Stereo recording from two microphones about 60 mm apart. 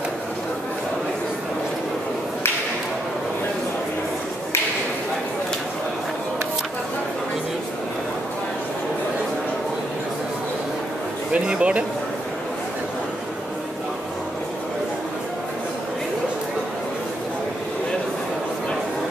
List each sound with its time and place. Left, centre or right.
11.3 s speech: centre